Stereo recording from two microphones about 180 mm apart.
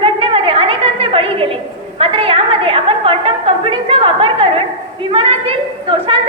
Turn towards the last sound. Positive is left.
turn(degrees=-30)  # may be behind; listen again after turning